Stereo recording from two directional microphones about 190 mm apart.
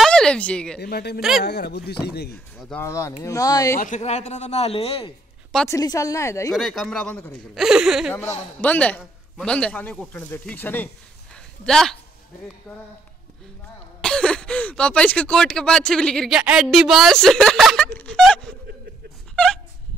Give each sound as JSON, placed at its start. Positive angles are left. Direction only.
{"t": 0.0, "sound": "speech", "side_deg": 5}
{"t": 0.7, "sound": "speech", "side_deg": 60}
{"t": 2.8, "sound": "a man's voice", "side_deg": 15}
{"t": 3.8, "sound": "a man's voice", "side_deg": 35}
{"t": 5.7, "sound": "a man's voice", "side_deg": 15}
{"t": 6.5, "sound": "speech", "side_deg": 0}
{"t": 8.5, "sound": "a man's voice", "side_deg": 10}
{"t": 14.0, "sound": "speech", "side_deg": 5}
{"t": 19.3, "sound": "a sound", "side_deg": 5}